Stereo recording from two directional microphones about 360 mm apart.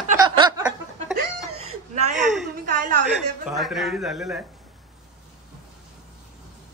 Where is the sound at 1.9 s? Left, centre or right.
Centre.